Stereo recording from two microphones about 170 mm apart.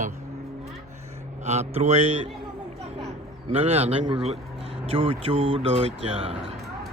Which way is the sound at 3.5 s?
35° right (ahead or behind).